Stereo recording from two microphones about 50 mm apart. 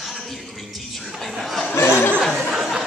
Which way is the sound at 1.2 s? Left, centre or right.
Centre.